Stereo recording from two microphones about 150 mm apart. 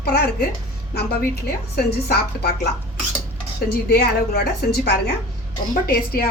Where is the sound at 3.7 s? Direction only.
90° left.